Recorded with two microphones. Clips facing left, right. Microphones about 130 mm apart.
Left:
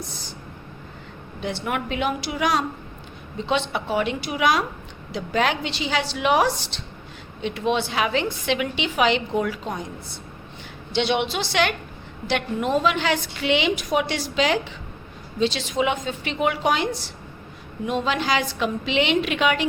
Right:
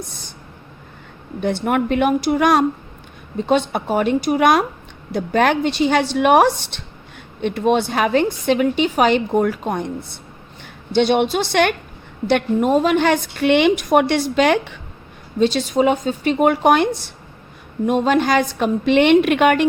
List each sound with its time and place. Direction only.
1.4 s a woman's voice: 50° right (ahead or behind)
10.9 s a woman's voice: 45° right (ahead or behind)
15.4 s a woman's voice: 45° right (ahead or behind)